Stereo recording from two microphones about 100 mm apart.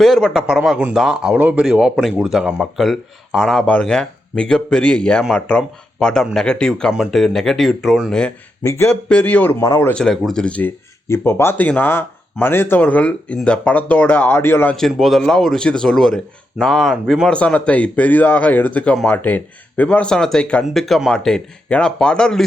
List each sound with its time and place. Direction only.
0.0 s speech: centre (ahead or behind)
9.0 s speech: 15° left (ahead or behind)
9.6 s speech: 30° left (ahead or behind)
9.9 s speech: 5° left (ahead or behind)
11.3 s speech: 25° left (ahead or behind)
14.8 s speech: centre (ahead or behind)
17.2 s speech: 10° left (ahead or behind)